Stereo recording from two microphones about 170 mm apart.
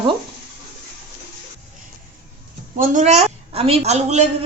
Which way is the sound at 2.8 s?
45° right (ahead or behind).